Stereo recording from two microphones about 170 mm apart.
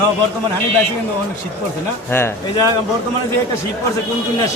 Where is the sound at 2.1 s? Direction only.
15° left (ahead or behind).